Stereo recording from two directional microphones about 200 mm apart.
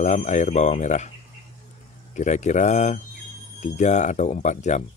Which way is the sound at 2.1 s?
35° left (ahead or behind).